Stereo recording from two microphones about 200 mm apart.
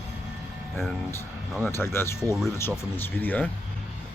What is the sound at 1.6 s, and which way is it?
A man's voice, 10° left (ahead or behind).